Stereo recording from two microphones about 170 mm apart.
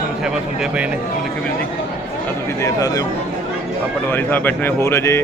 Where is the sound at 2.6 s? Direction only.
20° left (ahead or behind).